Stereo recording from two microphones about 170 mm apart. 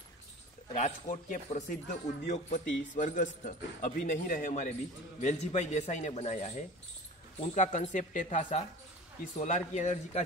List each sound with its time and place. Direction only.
0.7 s a man's voice: 45° left (ahead or behind)